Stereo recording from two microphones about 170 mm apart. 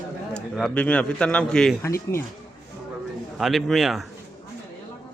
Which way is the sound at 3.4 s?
Centre (ahead or behind).